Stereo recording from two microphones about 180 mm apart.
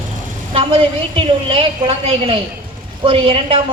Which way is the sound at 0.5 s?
30° right (ahead or behind).